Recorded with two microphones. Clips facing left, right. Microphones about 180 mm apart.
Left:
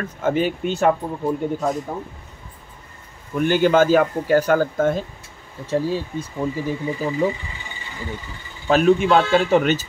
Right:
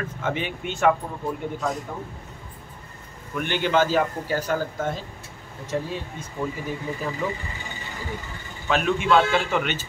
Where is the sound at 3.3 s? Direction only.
40° left (ahead or behind).